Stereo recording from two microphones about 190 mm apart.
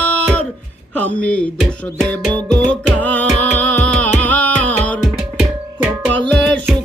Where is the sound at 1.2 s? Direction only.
65° right (ahead or behind).